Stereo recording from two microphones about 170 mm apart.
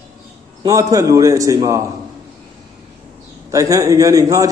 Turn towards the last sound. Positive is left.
turn(degrees=-20)  # may be behind; listen again after turning